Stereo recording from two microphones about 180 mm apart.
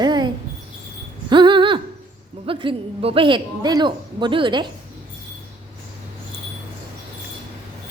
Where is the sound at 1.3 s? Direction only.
25° right (ahead or behind).